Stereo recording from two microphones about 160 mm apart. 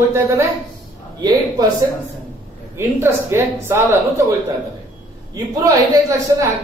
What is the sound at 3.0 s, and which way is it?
Speech, 15° right (ahead or behind).